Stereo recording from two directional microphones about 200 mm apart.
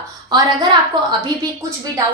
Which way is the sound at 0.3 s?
20° right (ahead or behind).